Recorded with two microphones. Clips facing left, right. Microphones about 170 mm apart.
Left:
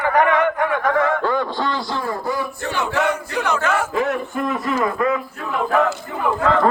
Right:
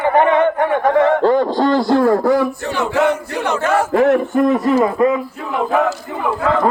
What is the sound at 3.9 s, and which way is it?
Speech, 50° right (ahead or behind).